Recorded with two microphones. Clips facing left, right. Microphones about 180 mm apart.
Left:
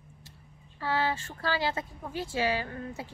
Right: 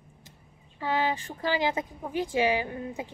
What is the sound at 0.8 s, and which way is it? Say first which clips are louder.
Speech: right 2 dB; 15° right (ahead or behind).